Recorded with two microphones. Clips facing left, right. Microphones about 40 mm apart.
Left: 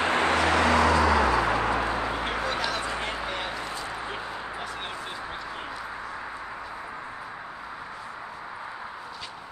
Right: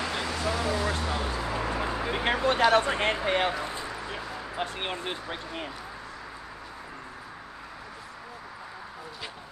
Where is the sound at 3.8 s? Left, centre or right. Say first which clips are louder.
Left 2 dB; left.